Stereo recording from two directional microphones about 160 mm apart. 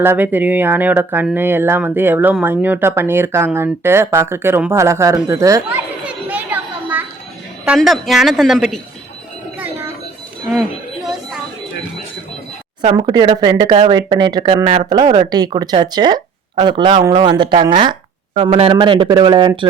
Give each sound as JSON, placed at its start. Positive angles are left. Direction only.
{"t": 0.0, "sound": "speech", "side_deg": -15}
{"t": 6.1, "sound": "children playing", "side_deg": -10}
{"t": 7.8, "sound": "speech", "side_deg": 0}
{"t": 9.6, "sound": "a sound", "side_deg": -15}
{"t": 12.8, "sound": "speech", "side_deg": -30}